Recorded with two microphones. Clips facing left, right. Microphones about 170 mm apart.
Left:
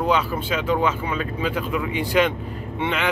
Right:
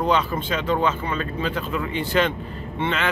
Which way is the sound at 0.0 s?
10° left (ahead or behind).